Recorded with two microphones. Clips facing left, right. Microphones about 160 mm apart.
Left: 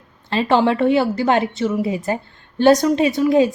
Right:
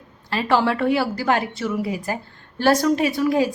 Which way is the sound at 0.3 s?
25° left (ahead or behind).